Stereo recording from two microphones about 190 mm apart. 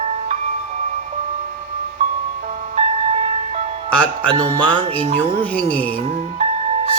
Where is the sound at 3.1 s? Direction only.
35° right (ahead or behind).